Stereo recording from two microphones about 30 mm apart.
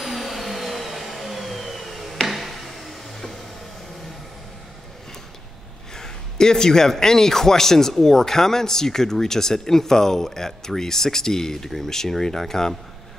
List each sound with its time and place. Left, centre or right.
0.0 s vacuum cleaner: centre
2.2 s a sound: centre
5.9 s a man's voice: left